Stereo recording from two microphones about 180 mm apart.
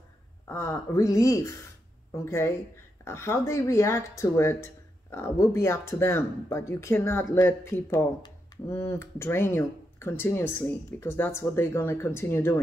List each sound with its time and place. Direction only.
0.5 s speech: 15° left (ahead or behind)